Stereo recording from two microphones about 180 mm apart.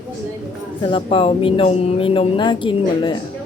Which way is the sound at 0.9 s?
30° left (ahead or behind).